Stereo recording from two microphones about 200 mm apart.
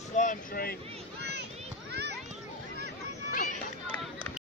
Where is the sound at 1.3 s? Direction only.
55° right (ahead or behind).